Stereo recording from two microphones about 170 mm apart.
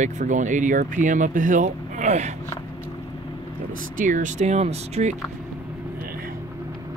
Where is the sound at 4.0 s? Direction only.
50° right (ahead or behind).